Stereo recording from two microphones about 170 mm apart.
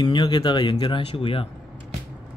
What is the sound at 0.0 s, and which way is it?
Speech, 25° left (ahead or behind).